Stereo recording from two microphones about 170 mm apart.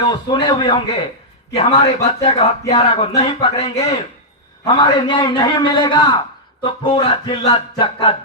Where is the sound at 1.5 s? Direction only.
40° left (ahead or behind).